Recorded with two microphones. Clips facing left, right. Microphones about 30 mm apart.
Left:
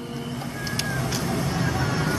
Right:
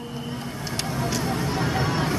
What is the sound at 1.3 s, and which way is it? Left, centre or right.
Music, right.